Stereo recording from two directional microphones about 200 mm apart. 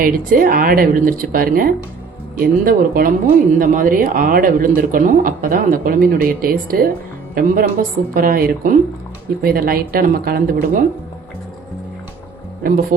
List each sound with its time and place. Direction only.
0.0 s speech: 45° right (ahead or behind)